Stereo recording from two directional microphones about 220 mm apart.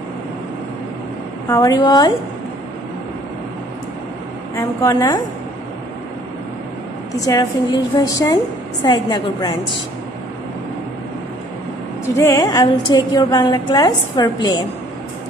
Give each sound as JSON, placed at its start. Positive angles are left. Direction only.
{"t": 1.5, "sound": "a woman's voice", "side_deg": 20}
{"t": 4.6, "sound": "a woman's voice", "side_deg": 15}
{"t": 7.2, "sound": "a woman's voice", "side_deg": 15}
{"t": 12.2, "sound": "a woman's voice", "side_deg": 15}